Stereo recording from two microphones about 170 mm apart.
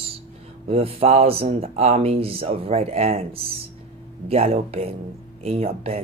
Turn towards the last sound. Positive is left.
turn(degrees=-35)  # may be behind; listen again after turning